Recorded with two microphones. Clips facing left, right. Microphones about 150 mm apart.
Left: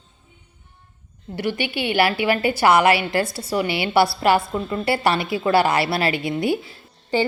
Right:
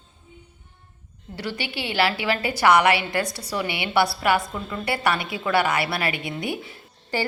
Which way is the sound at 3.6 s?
20° right (ahead or behind).